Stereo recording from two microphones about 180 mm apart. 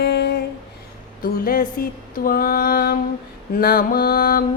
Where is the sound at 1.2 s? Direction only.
55° left (ahead or behind).